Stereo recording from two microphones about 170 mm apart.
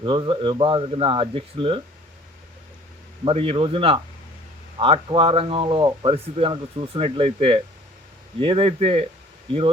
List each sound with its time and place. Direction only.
0.0 s speech: 30° right (ahead or behind)
3.2 s speech: 35° right (ahead or behind)